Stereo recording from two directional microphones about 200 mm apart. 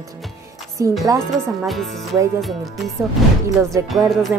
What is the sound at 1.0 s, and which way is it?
Speech, 15° right (ahead or behind).